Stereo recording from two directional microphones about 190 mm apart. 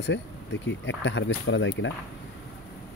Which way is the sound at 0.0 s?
70° left (ahead or behind).